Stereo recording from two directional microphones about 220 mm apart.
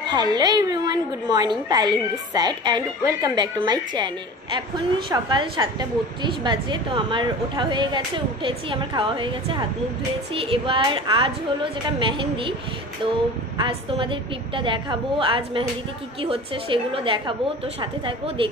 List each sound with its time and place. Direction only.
0.0 s a woman's voice: 20° right (ahead or behind)
5.1 s a woman's voice: 20° right (ahead or behind)
13.6 s a woman's voice: 20° right (ahead or behind)